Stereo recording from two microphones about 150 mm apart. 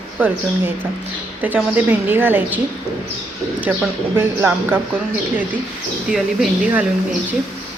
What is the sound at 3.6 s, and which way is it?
Speech, 10° right (ahead or behind).